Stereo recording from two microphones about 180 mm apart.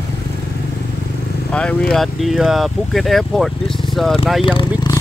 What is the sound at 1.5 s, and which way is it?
Speech, 5° left (ahead or behind).